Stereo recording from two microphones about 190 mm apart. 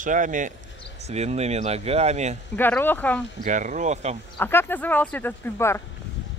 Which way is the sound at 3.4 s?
40° right (ahead or behind).